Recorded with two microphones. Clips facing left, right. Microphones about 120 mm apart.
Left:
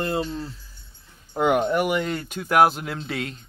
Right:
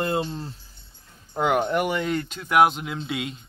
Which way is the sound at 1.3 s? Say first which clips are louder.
Left 2 dB; centre (ahead or behind).